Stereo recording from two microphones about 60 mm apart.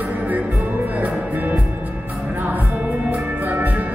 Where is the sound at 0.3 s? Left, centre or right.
Right.